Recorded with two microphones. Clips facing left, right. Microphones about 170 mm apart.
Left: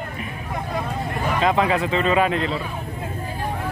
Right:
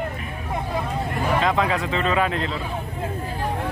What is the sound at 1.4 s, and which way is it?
Speech, 5° left (ahead or behind).